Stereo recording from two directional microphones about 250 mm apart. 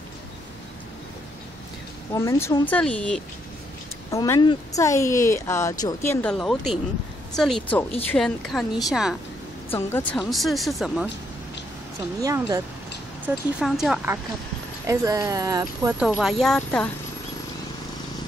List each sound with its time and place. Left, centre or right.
2.1 s speech: centre
2.7 s speech: centre
6.2 s speech: centre
9.7 s speech: centre
12.2 s speech: centre
13.2 s speech: centre